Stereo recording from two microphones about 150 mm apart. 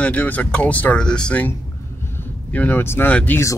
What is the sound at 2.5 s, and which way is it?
Speech, 10° left (ahead or behind).